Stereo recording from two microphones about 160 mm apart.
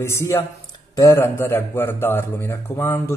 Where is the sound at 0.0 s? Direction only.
15° left (ahead or behind).